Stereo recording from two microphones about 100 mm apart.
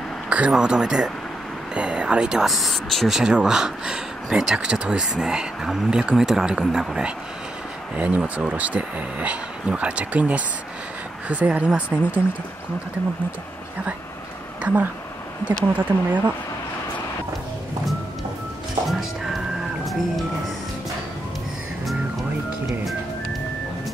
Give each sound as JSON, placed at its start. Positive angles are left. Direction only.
{"t": 0.3, "sound": "speech", "side_deg": -10}
{"t": 14.6, "sound": "speech", "side_deg": -15}
{"t": 18.9, "sound": "music", "side_deg": 0}